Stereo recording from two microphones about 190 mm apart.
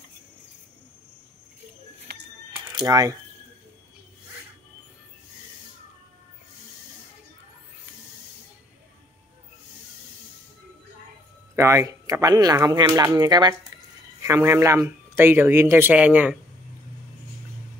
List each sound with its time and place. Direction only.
2.1 s a sound: 60° right (ahead or behind)
2.7 s speech: 20° right (ahead or behind)
11.5 s speech: 15° right (ahead or behind)